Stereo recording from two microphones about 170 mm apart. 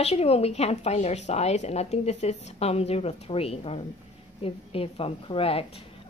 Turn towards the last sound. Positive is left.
turn(degrees=35)  # may be behind; listen again after turning